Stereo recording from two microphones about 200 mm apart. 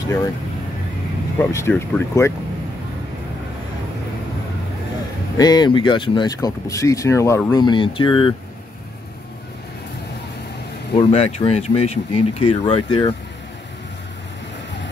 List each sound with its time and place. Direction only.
0.0 s speech: 20° left (ahead or behind)
1.4 s speech: 10° left (ahead or behind)
5.4 s speech: 20° left (ahead or behind)
11.0 s speech: 30° left (ahead or behind)